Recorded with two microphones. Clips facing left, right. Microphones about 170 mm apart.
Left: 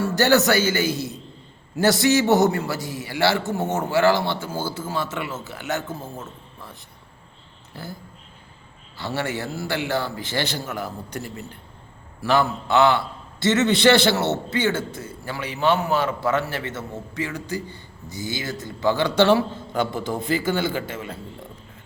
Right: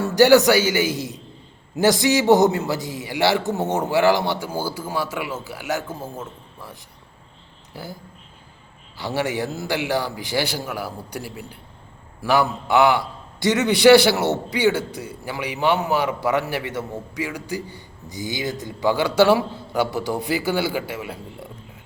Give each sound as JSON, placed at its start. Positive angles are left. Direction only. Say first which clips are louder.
{"t": 0.0, "sound": "a man's voice", "louder": "right 5 dB", "side_deg": -15}
{"t": 9.0, "sound": "a man's voice", "louder": "right 3 dB", "side_deg": -15}